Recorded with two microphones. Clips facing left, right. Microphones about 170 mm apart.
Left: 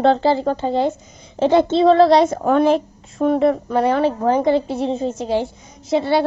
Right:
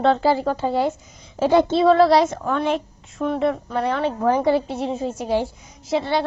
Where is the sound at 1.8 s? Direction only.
25° left (ahead or behind).